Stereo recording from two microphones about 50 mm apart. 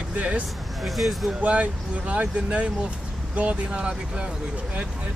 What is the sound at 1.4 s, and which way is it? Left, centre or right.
Speech, right.